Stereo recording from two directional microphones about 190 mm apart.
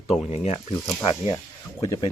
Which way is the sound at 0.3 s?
30° left (ahead or behind).